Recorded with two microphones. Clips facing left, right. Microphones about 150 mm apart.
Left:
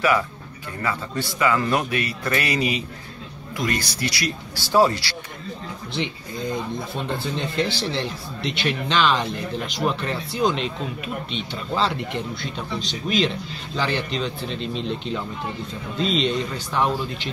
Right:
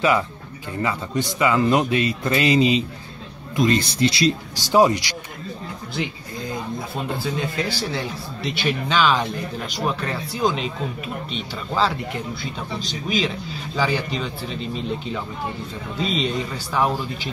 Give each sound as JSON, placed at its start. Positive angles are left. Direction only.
{"t": 0.8, "sound": "speech", "side_deg": -20}
{"t": 7.1, "sound": "speech", "side_deg": -5}
{"t": 11.7, "sound": "speech", "side_deg": 0}